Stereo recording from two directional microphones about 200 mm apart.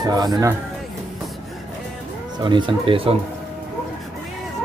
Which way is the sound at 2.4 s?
25° right (ahead or behind).